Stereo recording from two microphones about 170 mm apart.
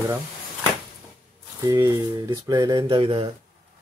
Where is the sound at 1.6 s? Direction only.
20° right (ahead or behind).